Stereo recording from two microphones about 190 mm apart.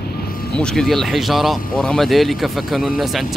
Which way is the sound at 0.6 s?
Centre (ahead or behind).